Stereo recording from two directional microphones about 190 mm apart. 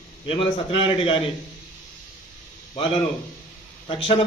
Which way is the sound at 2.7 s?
25° left (ahead or behind).